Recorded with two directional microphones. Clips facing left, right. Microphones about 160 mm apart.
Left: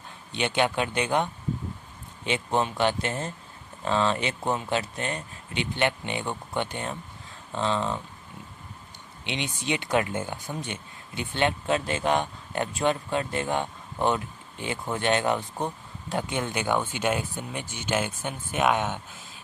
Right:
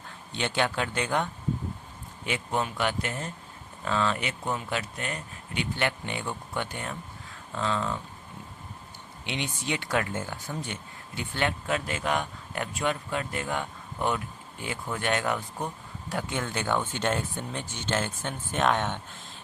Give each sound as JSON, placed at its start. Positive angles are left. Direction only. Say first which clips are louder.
{"t": 0.3, "sound": "speech", "louder": "left 3 dB", "side_deg": 20}
{"t": 9.2, "sound": "speech", "louder": "left 2 dB", "side_deg": 20}